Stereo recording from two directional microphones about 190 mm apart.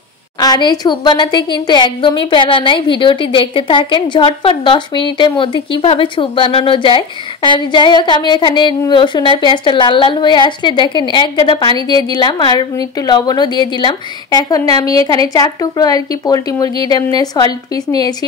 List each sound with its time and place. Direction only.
0.4 s a woman's voice: 20° left (ahead or behind)